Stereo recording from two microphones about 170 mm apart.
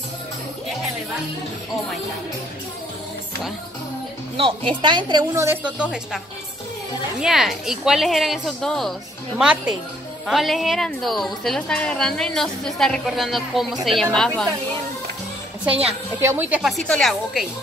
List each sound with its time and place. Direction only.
4.4 s a woman's voice: 30° right (ahead or behind); by 14.5 s 5° left (ahead or behind)
15.8 s a woman's voice: 15° right (ahead or behind)